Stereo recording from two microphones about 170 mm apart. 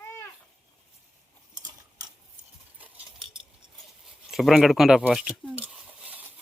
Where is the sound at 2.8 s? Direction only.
10° right (ahead or behind).